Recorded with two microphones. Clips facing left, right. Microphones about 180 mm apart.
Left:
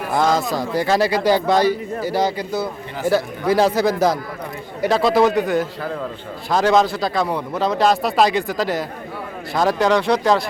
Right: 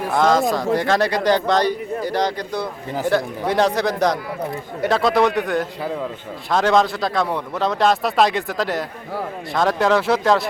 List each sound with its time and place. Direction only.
0.1 s speech: centre (ahead or behind)